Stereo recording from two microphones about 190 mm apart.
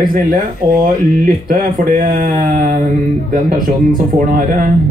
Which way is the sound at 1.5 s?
45° right (ahead or behind).